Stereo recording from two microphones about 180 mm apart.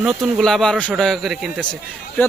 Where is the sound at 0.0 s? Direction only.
Centre (ahead or behind).